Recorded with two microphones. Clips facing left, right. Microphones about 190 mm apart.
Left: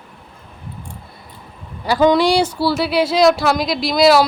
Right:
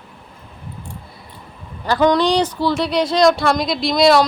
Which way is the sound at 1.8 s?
10° left (ahead or behind).